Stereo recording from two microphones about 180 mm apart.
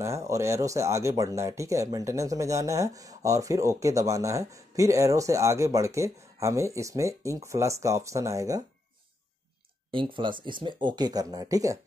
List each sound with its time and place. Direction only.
0.3 s speech: 15° right (ahead or behind)
9.8 s speech: 30° right (ahead or behind)